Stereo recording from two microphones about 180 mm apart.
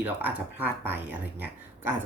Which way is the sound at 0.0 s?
10° right (ahead or behind).